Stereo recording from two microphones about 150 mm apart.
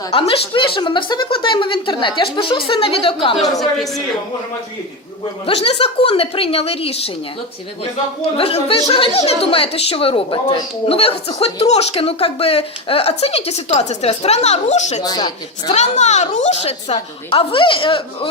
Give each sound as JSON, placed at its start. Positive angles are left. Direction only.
{"t": 0.1, "sound": "a woman's voice", "side_deg": 35}
{"t": 3.6, "sound": "a woman's voice", "side_deg": 0}
{"t": 5.5, "sound": "a woman's voice", "side_deg": 40}
{"t": 8.4, "sound": "a woman's voice", "side_deg": 40}
{"t": 15.0, "sound": "speech", "side_deg": 25}
{"t": 15.7, "sound": "a woman's voice", "side_deg": 50}